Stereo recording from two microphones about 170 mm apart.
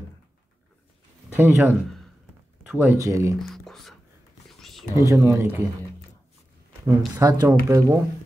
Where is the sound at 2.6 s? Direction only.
5° right (ahead or behind).